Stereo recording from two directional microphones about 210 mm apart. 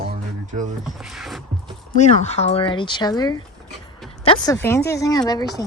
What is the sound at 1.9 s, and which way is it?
Speech, 35° left (ahead or behind).